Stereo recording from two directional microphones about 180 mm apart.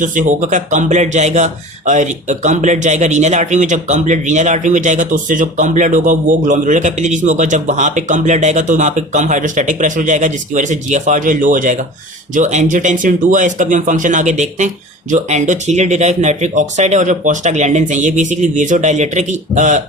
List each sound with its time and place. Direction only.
0.0 s speech: 45° right (ahead or behind)